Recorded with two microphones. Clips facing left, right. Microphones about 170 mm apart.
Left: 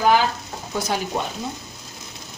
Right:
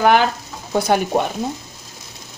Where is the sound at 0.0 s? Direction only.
65° right (ahead or behind).